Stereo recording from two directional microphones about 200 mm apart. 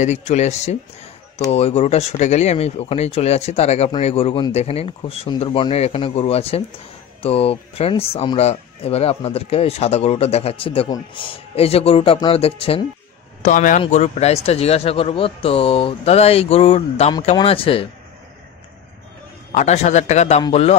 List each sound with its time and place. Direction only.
0.0 s speech: 35° left (ahead or behind)
13.4 s speech: 40° left (ahead or behind)
19.5 s speech: 35° left (ahead or behind)